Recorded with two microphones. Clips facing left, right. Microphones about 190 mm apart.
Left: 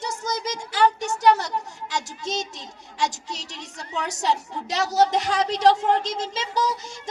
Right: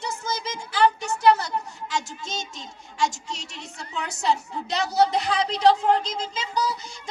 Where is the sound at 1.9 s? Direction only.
40° left (ahead or behind).